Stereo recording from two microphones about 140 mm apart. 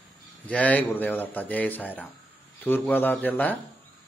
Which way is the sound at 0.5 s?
10° left (ahead or behind).